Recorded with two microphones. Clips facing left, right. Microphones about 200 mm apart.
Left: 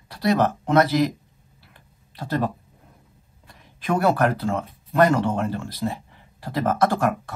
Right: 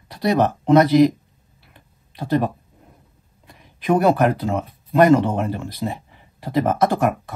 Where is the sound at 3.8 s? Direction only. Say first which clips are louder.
Right 4 dB; 20° right (ahead or behind).